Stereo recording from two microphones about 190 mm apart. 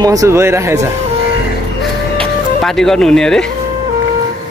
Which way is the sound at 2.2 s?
Centre (ahead or behind).